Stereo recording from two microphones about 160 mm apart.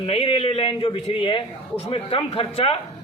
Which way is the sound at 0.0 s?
35° left (ahead or behind).